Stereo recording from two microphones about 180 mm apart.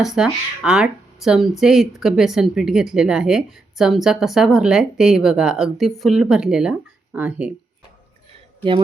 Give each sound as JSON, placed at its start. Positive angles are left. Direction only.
{"t": 0.0, "sound": "speech", "side_deg": 0}